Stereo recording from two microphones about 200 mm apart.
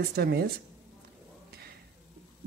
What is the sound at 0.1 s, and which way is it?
Speech, 50° right (ahead or behind).